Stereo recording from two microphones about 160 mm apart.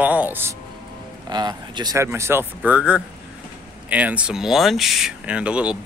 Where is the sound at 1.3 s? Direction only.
25° right (ahead or behind).